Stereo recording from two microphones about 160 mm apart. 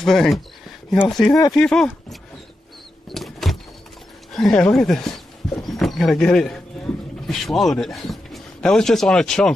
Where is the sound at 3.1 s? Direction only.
Centre (ahead or behind).